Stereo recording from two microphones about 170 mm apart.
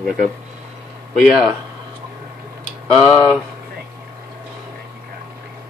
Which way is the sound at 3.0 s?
20° left (ahead or behind).